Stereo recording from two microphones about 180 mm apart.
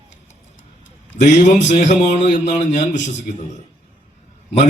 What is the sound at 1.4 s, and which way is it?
A man's voice, 45° left (ahead or behind).